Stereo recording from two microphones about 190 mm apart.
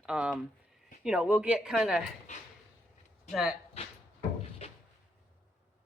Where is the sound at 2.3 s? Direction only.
35° left (ahead or behind).